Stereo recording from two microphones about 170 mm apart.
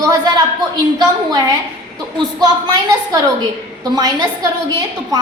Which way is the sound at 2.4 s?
20° right (ahead or behind).